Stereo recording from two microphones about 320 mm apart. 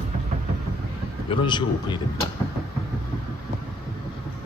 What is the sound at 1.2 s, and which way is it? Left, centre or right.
Speech, centre.